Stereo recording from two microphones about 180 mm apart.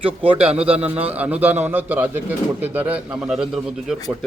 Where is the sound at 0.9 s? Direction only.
10° right (ahead or behind).